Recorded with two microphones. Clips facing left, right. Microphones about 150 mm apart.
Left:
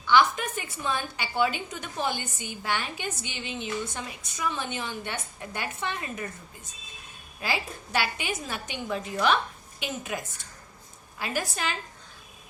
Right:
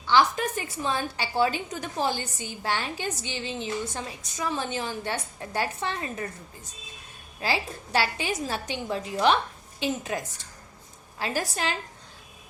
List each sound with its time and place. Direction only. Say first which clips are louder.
0.1 s a woman's voice: even; 30° right (ahead or behind)
7.4 s a woman's voice: right 2 dB; 30° right (ahead or behind)
11.2 s a woman's voice: right 2 dB; 30° right (ahead or behind)